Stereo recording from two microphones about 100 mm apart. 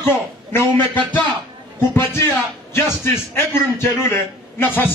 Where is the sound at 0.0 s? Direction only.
30° left (ahead or behind).